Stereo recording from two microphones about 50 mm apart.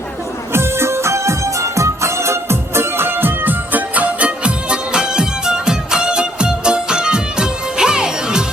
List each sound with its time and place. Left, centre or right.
0.5 s music: right; by 8.4 s centre